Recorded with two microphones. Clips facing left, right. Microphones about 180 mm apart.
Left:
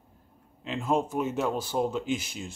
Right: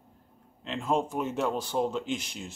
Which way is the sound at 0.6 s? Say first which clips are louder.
Left 1 dB; 5° left (ahead or behind).